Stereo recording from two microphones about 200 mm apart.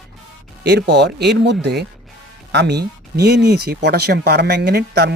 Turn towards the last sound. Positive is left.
turn(degrees=-55)  # may be behind; listen again after turning